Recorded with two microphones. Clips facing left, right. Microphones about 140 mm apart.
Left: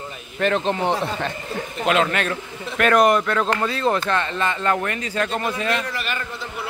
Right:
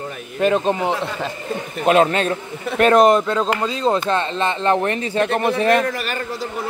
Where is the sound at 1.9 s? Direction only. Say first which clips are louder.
Right 5 dB; 30° right (ahead or behind).